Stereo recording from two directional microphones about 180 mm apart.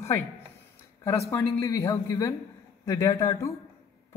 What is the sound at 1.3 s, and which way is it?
Speech, 15° left (ahead or behind).